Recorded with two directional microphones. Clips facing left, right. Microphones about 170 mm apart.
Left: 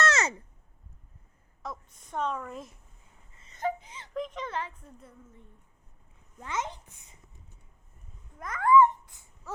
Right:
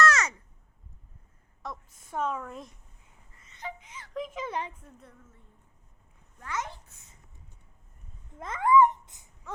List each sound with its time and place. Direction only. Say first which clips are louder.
0.0 s a sound: right 2 dB; 25° left (ahead or behind)
1.6 s a sound: even; centre (ahead or behind)
3.5 s speech: left 9 dB; 45° left (ahead or behind)
4.1 s a child's voice: even; 5° right (ahead or behind)
6.4 s a child's voice: left 2 dB; 20° left (ahead or behind)
8.4 s a child's voice: even; 25° right (ahead or behind)